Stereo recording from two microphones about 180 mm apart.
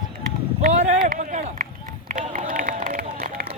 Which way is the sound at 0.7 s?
40° right (ahead or behind).